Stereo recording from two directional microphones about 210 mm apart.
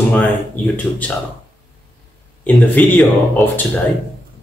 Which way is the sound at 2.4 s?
5° left (ahead or behind).